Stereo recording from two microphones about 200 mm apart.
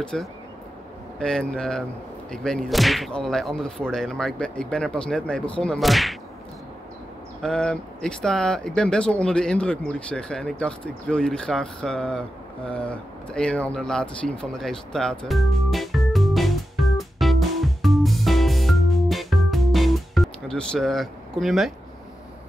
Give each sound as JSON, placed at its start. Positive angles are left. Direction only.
{"t": 0.0, "sound": "speech", "side_deg": 5}
{"t": 7.4, "sound": "speech", "side_deg": 5}